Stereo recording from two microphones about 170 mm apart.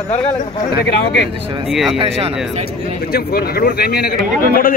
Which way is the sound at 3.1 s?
65° left (ahead or behind).